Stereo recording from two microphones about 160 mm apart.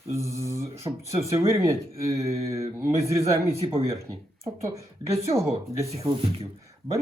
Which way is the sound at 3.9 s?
20° right (ahead or behind).